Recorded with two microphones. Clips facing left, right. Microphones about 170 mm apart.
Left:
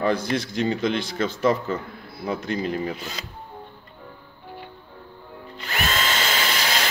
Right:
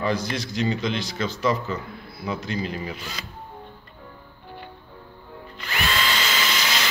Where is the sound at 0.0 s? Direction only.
55° left (ahead or behind).